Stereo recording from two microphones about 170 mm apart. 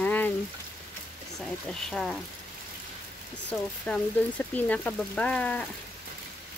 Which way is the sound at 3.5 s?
10° left (ahead or behind).